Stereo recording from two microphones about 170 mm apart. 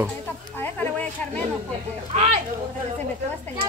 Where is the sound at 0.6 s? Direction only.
10° left (ahead or behind).